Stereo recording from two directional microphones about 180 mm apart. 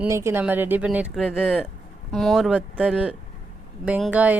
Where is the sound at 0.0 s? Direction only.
15° right (ahead or behind).